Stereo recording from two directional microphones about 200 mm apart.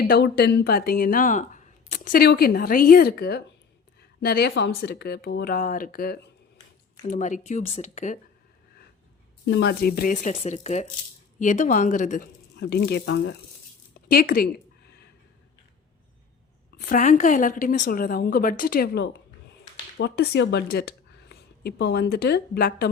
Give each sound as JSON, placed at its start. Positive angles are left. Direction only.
{"t": 0.1, "sound": "speech", "side_deg": 55}
{"t": 9.5, "sound": "speech", "side_deg": 55}
{"t": 10.4, "sound": "speech", "side_deg": 35}
{"t": 12.5, "sound": "speech", "side_deg": 55}
{"t": 16.9, "sound": "speech", "side_deg": 40}